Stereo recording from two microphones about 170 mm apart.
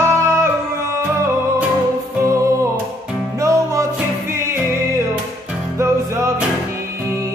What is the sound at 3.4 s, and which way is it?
Music, 20° right (ahead or behind).